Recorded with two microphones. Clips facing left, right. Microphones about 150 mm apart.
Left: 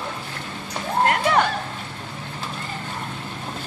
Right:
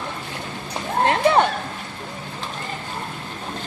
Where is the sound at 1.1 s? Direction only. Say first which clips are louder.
Right 5 dB; 25° right (ahead or behind).